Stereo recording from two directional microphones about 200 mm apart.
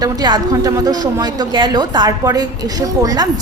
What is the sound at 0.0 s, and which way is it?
A woman's voice, 20° right (ahead or behind).